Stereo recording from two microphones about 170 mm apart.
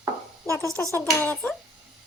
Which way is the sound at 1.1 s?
10° left (ahead or behind).